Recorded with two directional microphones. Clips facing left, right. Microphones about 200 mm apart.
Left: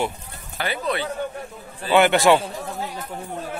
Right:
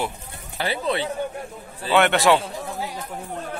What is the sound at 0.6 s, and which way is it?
Speech, 30° right (ahead or behind).